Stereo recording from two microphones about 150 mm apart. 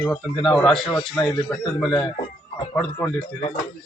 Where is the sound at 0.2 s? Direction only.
Centre (ahead or behind).